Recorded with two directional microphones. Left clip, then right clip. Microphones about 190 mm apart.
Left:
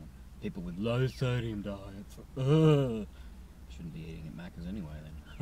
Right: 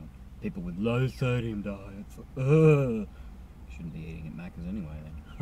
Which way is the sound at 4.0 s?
15° left (ahead or behind).